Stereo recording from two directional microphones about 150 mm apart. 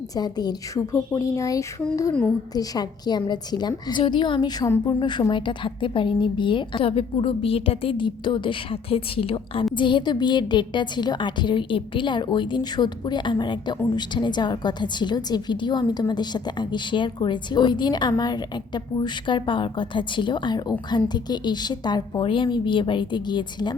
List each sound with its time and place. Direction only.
0.2 s a woman's voice: 25° left (ahead or behind)